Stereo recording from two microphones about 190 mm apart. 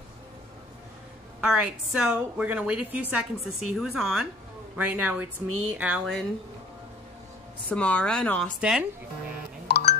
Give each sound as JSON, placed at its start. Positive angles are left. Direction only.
{"t": 1.4, "sound": "a woman's voice", "side_deg": -5}
{"t": 7.7, "sound": "a woman's voice", "side_deg": 5}
{"t": 9.7, "sound": "a sound", "side_deg": 60}